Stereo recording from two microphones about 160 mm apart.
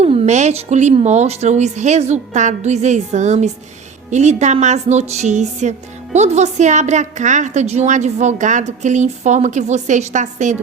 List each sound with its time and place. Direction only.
0.0 s a woman's voice: 45° right (ahead or behind)